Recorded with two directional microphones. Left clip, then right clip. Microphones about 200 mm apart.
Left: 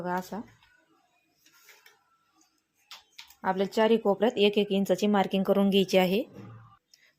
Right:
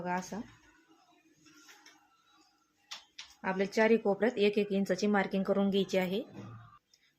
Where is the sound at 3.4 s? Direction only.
20° left (ahead or behind); by 6.2 s 35° left (ahead or behind).